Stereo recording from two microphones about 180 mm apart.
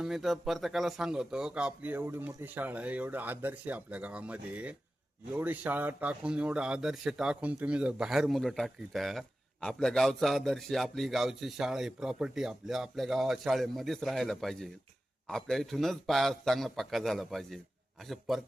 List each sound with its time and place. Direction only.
0.0 s a man's voice: centre (ahead or behind)